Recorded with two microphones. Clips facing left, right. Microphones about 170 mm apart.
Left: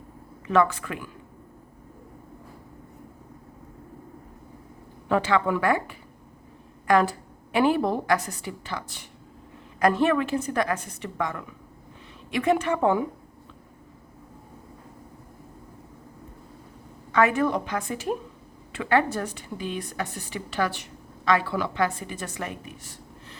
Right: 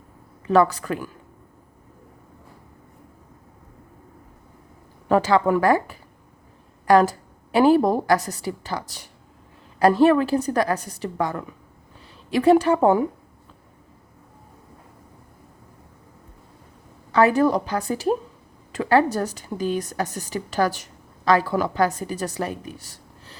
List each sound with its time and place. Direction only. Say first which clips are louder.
0.4 s a woman's voice: right 4 dB; 35° right (ahead or behind)
5.0 s a woman's voice: right 5 dB; 40° right (ahead or behind)
17.1 s a woman's voice: right 4 dB; 35° right (ahead or behind)